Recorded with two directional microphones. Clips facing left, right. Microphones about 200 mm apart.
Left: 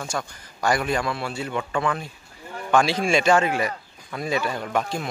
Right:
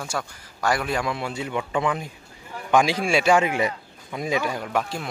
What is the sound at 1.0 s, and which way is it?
Speech, 15° right (ahead or behind).